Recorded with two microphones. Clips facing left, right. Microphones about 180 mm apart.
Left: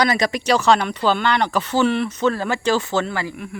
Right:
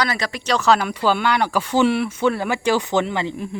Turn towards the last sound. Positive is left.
turn(degrees=-30)  # may be behind; listen again after turning